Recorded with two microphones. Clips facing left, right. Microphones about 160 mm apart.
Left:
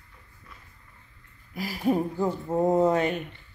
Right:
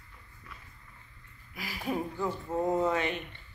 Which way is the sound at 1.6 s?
40° left (ahead or behind).